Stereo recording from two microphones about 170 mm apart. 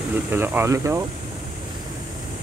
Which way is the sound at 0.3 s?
15° right (ahead or behind).